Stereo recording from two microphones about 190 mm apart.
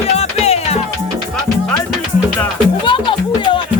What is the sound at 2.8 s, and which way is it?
Music, 25° left (ahead or behind).